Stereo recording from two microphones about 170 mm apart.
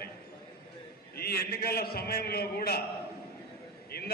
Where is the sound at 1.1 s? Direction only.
65° left (ahead or behind).